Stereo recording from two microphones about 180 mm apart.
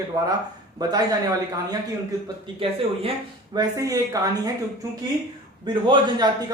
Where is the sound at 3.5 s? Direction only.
20° right (ahead or behind).